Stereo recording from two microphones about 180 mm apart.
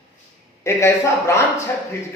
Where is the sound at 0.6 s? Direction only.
15° left (ahead or behind).